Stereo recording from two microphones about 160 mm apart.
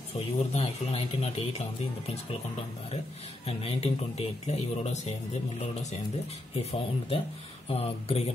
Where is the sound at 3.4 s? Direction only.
40° left (ahead or behind).